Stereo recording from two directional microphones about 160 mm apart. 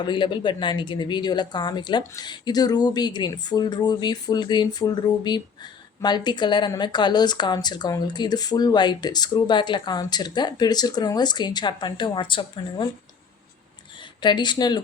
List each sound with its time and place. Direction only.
0.0 s speech: 30° left (ahead or behind)
14.2 s speech: 30° left (ahead or behind)